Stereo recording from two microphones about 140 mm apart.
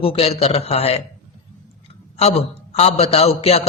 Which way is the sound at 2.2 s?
50° left (ahead or behind).